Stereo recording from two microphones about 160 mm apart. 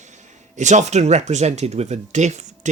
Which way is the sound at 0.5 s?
50° right (ahead or behind).